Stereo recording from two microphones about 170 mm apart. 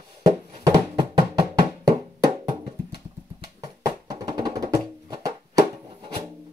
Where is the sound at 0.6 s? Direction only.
25° right (ahead or behind).